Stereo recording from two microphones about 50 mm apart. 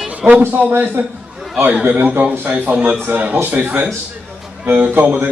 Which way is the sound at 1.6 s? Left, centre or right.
Right.